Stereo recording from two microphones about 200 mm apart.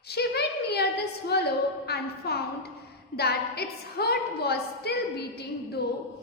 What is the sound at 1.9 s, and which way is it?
A woman's voice, 55° left (ahead or behind).